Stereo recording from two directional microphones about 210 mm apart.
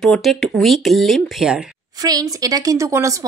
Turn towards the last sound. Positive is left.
turn(degrees=-15)  # may be behind; listen again after turning